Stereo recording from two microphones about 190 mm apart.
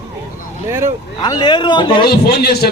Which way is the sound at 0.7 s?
15° right (ahead or behind).